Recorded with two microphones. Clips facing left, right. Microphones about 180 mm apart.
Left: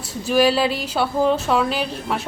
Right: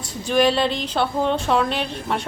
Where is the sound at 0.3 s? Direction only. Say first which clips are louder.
Left 1 dB; 5° left (ahead or behind).